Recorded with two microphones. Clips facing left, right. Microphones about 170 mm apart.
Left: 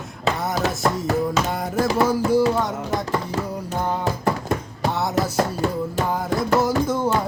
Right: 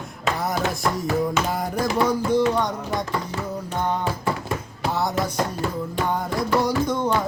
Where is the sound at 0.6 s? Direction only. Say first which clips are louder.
Left 2 dB; 35° left (ahead or behind).